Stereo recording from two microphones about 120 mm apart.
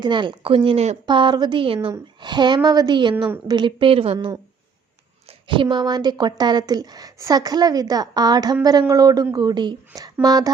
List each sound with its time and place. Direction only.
0.0 s a woman's voice: 40° right (ahead or behind)
5.5 s speech: 40° right (ahead or behind)